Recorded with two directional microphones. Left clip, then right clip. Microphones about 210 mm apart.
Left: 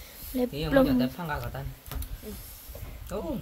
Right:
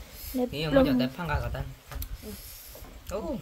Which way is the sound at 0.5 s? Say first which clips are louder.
Even; 5° right (ahead or behind).